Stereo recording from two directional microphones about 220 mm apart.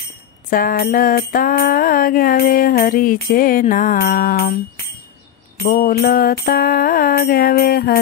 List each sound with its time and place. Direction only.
0.5 s music: 40° left (ahead or behind)
5.7 s mantra: 45° left (ahead or behind)